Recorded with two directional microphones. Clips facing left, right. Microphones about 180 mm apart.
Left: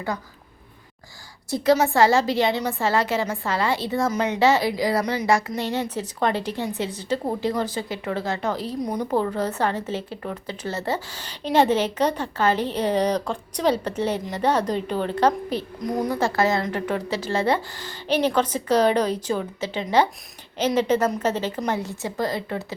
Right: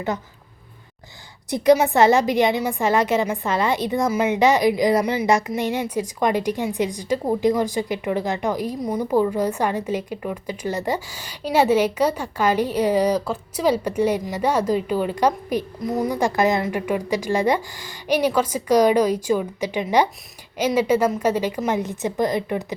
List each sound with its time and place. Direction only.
1.5 s a woman's voice: 20° right (ahead or behind)